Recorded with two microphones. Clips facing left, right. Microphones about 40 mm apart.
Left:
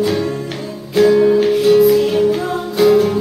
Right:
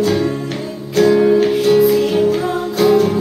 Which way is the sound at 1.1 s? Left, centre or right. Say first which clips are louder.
Right 1 dB; centre.